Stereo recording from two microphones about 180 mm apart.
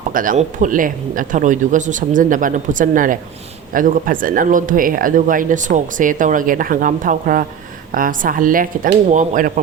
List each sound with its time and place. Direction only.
0.1 s speech: 50° right (ahead or behind)